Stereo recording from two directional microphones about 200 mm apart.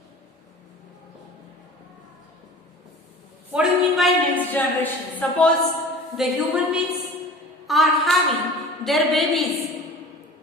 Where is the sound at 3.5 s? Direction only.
Centre (ahead or behind).